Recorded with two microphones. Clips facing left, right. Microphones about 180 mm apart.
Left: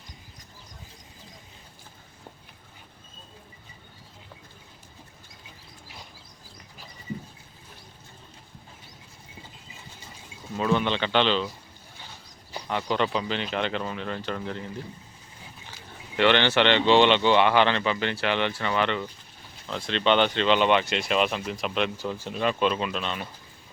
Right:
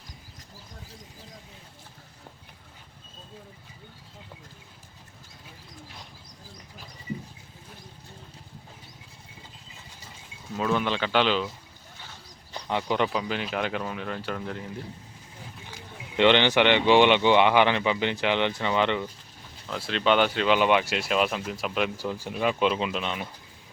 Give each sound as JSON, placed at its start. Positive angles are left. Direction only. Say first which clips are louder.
{"t": 10.6, "sound": "speech", "louder": "left 1 dB", "side_deg": 0}
{"t": 12.6, "sound": "speech", "louder": "even", "side_deg": -15}
{"t": 16.1, "sound": "speech", "louder": "right 1 dB", "side_deg": -15}
{"t": 19.6, "sound": "speech", "louder": "even", "side_deg": -5}